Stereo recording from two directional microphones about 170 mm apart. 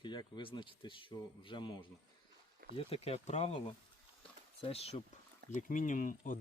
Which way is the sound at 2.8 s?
35° left (ahead or behind).